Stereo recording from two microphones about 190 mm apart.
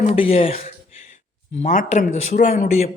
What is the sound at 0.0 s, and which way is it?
Speech, 30° left (ahead or behind).